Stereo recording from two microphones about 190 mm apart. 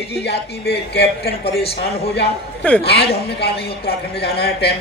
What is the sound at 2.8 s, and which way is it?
A man's voice, 60° left (ahead or behind).